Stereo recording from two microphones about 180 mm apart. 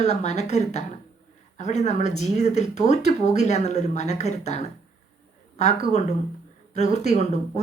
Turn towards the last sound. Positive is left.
turn(degrees=40)  # may be behind; listen again after turning